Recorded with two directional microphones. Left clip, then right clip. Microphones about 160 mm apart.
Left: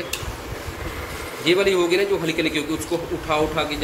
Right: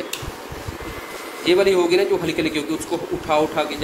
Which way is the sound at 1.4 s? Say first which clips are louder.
Right 2 dB; 90° right.